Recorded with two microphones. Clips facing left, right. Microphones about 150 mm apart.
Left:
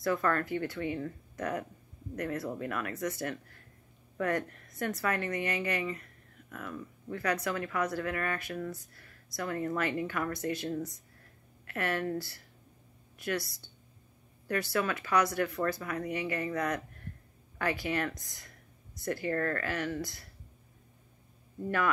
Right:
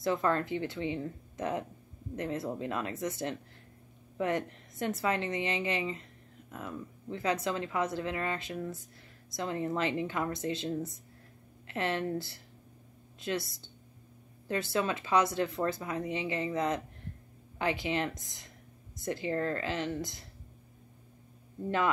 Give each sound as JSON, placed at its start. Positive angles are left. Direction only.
{"t": 0.0, "sound": "a woman's voice", "side_deg": -20}